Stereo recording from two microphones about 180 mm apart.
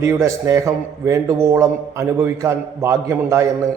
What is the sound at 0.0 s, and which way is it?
A man's voice, 15° right (ahead or behind).